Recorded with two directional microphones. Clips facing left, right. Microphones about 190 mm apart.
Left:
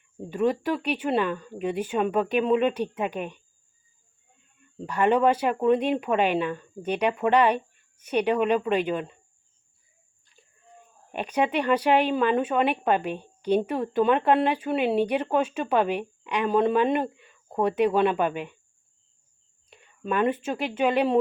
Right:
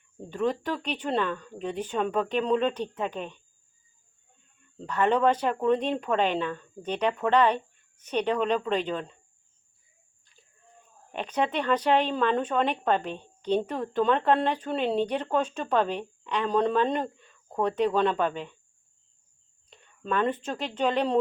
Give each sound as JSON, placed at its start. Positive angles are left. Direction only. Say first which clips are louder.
{"t": 0.2, "sound": "speech", "louder": "left 3 dB", "side_deg": 10}
{"t": 4.8, "sound": "speech", "louder": "left 2 dB", "side_deg": 10}
{"t": 11.1, "sound": "speech", "louder": "left 3 dB", "side_deg": 10}
{"t": 19.7, "sound": "speech", "louder": "left 2 dB", "side_deg": 10}